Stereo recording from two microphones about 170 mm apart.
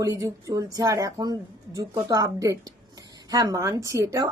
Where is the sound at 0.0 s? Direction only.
20° right (ahead or behind).